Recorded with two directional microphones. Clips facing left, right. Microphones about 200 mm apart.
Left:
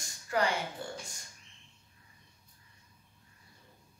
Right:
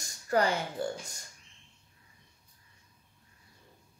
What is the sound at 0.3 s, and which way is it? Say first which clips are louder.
Speech: right 3 dB; 40° right (ahead or behind).